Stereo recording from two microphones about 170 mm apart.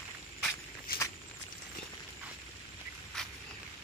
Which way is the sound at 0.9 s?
60° left (ahead or behind).